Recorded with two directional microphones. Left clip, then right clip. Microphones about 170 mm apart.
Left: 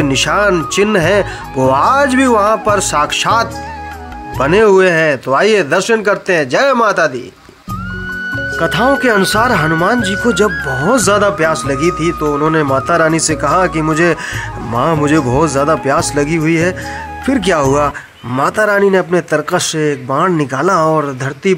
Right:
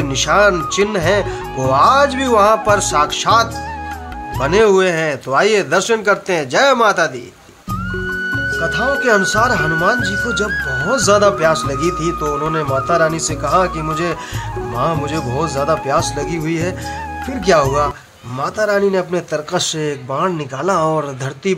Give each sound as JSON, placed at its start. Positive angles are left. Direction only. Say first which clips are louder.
{"t": 0.0, "sound": "speech", "louder": "left 1 dB", "side_deg": 35}
{"t": 2.2, "sound": "speech", "louder": "left 1 dB", "side_deg": 25}
{"t": 8.3, "sound": "music", "louder": "left 3 dB", "side_deg": 0}
{"t": 9.0, "sound": "speech", "louder": "left 2 dB", "side_deg": 35}
{"t": 9.9, "sound": "speech", "louder": "left 4 dB", "side_deg": 0}
{"t": 10.9, "sound": "speech", "louder": "left 3 dB", "side_deg": 40}
{"t": 11.1, "sound": "speech", "louder": "even", "side_deg": 20}
{"t": 12.7, "sound": "speech", "louder": "left 3 dB", "side_deg": 30}
{"t": 17.3, "sound": "speech", "louder": "left 2 dB", "side_deg": 40}
{"t": 20.1, "sound": "speech", "louder": "left 5 dB", "side_deg": 30}
{"t": 20.7, "sound": "speech", "louder": "left 2 dB", "side_deg": 15}